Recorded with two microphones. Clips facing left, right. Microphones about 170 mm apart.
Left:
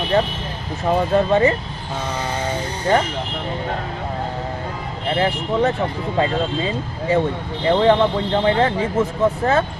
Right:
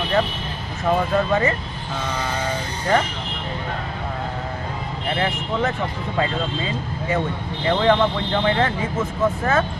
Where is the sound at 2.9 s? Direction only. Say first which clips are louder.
Left 2 dB; 30° left (ahead or behind).